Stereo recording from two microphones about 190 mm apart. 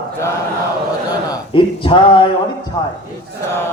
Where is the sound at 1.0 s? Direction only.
25° left (ahead or behind).